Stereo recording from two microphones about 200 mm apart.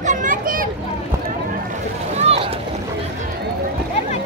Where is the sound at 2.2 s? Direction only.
30° right (ahead or behind).